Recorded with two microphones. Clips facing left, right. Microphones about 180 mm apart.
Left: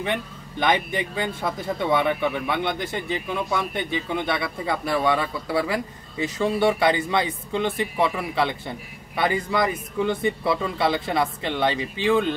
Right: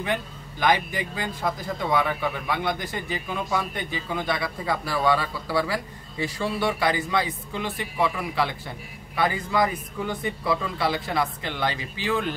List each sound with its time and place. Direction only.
0.0 s speech: 25° left (ahead or behind)